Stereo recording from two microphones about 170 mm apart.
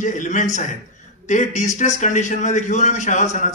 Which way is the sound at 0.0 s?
50° left (ahead or behind).